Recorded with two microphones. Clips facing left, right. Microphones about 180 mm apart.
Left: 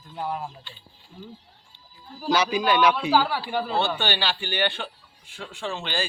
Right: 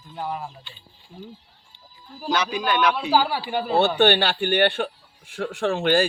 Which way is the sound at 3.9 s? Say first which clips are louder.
Right 9 dB; 55° right (ahead or behind).